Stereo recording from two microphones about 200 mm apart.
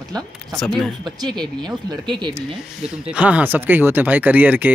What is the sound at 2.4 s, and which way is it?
Speech, 5° right (ahead or behind).